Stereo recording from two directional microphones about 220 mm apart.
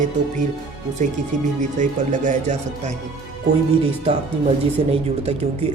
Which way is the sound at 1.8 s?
35° right (ahead or behind).